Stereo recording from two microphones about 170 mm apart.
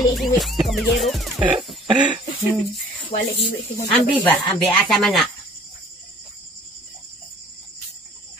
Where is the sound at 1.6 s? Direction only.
5° right (ahead or behind).